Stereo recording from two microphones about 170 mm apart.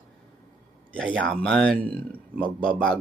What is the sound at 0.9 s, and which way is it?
Speech, 5° left (ahead or behind).